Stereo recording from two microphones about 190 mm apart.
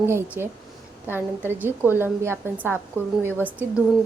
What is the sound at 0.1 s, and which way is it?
Speech, 15° right (ahead or behind).